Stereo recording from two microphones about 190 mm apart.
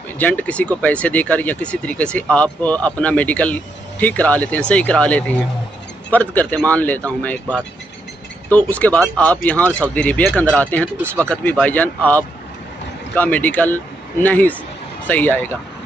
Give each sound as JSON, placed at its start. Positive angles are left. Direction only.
{"t": 0.2, "sound": "speech", "side_deg": 10}